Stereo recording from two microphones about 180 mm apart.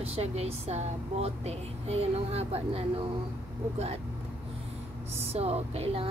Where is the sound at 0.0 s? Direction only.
35° right (ahead or behind).